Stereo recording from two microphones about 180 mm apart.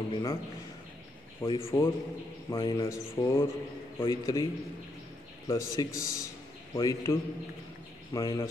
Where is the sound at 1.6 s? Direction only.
15° left (ahead or behind).